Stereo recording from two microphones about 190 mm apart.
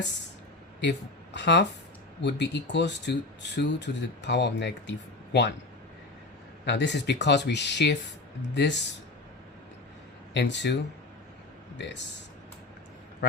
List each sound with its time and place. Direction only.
0.8 s speech: 65° left (ahead or behind)
6.7 s speech: 65° left (ahead or behind)
10.3 s speech: 65° left (ahead or behind)